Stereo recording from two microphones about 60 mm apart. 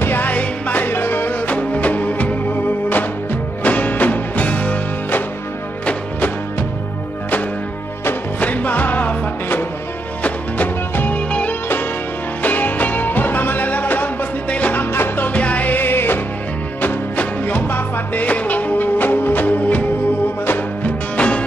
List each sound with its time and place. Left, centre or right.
0.0 s music: left
8.4 s music: left
21.2 s music: left